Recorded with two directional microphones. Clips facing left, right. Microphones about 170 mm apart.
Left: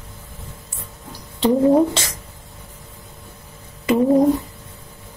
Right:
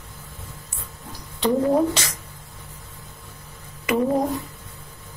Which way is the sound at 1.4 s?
25° left (ahead or behind).